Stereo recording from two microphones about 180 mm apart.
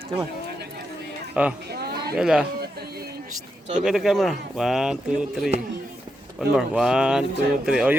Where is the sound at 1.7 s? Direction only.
60° right (ahead or behind).